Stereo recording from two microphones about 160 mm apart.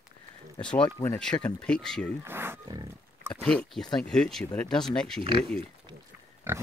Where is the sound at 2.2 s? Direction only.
15° right (ahead or behind).